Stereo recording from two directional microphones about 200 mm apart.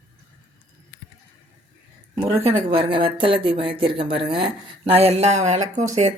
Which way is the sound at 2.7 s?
25° right (ahead or behind).